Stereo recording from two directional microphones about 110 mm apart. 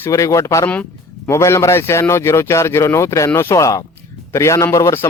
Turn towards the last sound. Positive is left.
turn(degrees=25)  # may be behind; listen again after turning